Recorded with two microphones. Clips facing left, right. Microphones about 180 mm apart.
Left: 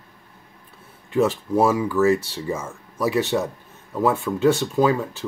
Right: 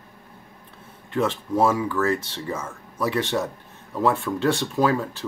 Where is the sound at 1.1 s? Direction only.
5° left (ahead or behind).